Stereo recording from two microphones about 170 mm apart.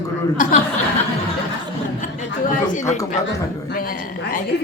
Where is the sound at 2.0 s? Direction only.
50° left (ahead or behind).